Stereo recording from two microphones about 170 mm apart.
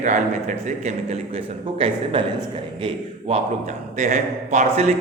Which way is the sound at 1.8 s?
30° right (ahead or behind).